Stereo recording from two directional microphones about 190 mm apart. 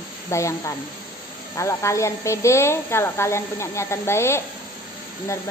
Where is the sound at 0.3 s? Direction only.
15° left (ahead or behind).